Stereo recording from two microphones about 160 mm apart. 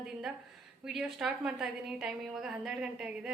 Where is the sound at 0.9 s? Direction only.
Centre (ahead or behind).